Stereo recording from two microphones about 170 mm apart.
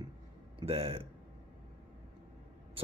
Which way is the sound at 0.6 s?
35° right (ahead or behind).